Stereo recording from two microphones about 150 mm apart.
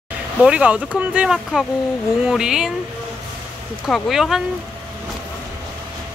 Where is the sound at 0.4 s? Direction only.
5° right (ahead or behind).